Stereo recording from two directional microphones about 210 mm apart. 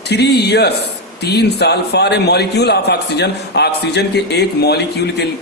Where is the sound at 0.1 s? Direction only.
50° left (ahead or behind).